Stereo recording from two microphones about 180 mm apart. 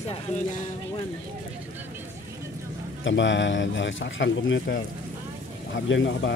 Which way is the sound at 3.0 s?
90° left.